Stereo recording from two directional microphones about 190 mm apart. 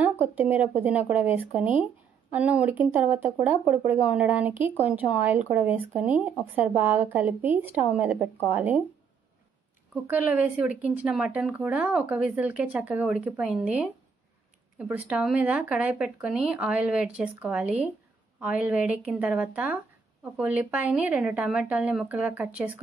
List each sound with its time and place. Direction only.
0.0 s speech: 10° right (ahead or behind)
10.0 s speech: 10° right (ahead or behind)